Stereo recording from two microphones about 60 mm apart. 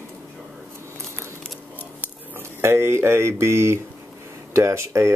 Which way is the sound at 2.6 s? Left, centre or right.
Right.